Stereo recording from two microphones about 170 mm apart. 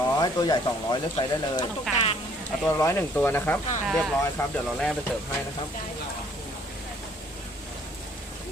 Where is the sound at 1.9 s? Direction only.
35° left (ahead or behind).